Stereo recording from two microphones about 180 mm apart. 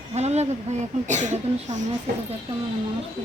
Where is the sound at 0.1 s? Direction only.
35° right (ahead or behind).